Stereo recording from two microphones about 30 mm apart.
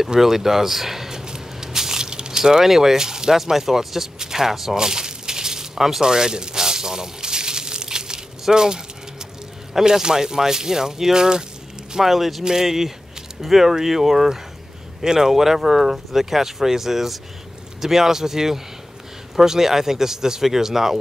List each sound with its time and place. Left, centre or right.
0.2 s speech: centre
1.2 s spray: right
3.3 s speech: centre
4.7 s a sound: right
10.0 s speech: centre
12.0 s speech: centre